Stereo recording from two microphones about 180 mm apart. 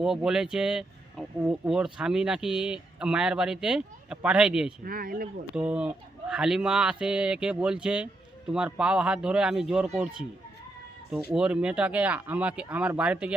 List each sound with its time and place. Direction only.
0.0 s speech: 5° right (ahead or behind)
4.9 s speech: 55° right (ahead or behind)
5.5 s speech: 5° right (ahead or behind)